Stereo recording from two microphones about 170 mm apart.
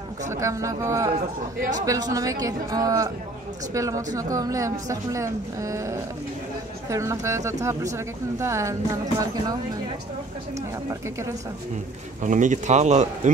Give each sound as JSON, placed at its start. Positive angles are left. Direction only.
{"t": 0.3, "sound": "speech", "side_deg": -15}
{"t": 1.6, "sound": "speech", "side_deg": -45}
{"t": 1.9, "sound": "a woman's voice", "side_deg": -20}
{"t": 10.9, "sound": "speech", "side_deg": -15}
{"t": 12.2, "sound": "speech", "side_deg": -45}